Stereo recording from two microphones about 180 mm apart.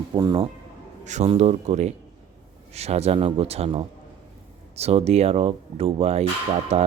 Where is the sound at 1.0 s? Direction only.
35° right (ahead or behind).